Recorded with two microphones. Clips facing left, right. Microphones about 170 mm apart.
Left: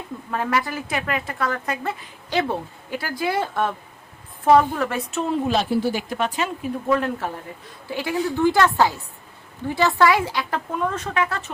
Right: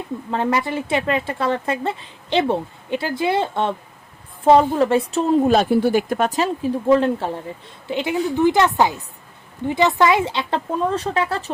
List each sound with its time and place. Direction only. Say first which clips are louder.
0.3 s a woman's voice: right 3 dB; 25° right (ahead or behind)
5.5 s a woman's voice: right 5 dB; 50° right (ahead or behind); by 11.5 s 30° right (ahead or behind)